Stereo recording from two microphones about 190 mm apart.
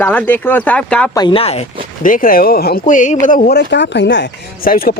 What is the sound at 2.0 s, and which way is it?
Speech, 45° left (ahead or behind).